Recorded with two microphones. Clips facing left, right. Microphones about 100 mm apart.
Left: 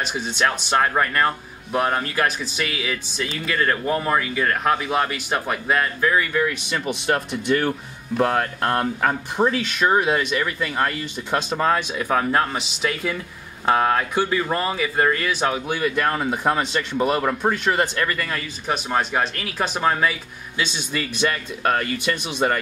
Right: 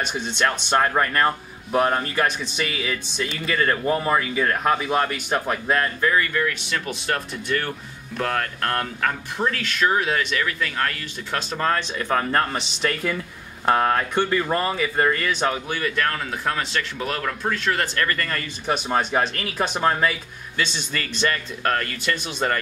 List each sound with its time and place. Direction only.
0.0 s speech: 5° left (ahead or behind)